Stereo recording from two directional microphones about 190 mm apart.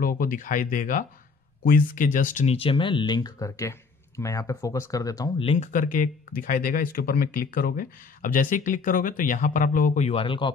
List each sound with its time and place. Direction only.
0.0 s speech: 50° left (ahead or behind)
2.5 s speech: 30° left (ahead or behind)
5.4 s speech: 30° left (ahead or behind)
5.7 s speech: 45° left (ahead or behind); by 10.5 s 25° left (ahead or behind)